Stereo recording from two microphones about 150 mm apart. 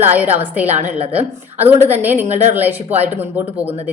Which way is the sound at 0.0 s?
10° right (ahead or behind).